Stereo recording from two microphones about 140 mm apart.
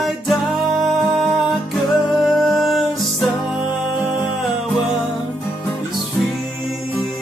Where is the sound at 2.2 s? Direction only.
Centre (ahead or behind).